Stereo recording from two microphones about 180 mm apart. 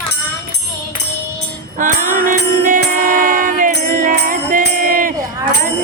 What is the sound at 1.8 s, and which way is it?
Music, 45° right (ahead or behind).